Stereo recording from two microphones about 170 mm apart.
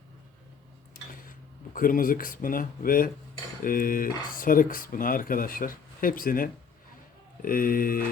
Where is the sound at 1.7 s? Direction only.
55° left (ahead or behind).